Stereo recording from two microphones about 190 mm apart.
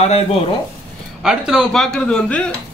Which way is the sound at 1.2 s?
Centre (ahead or behind).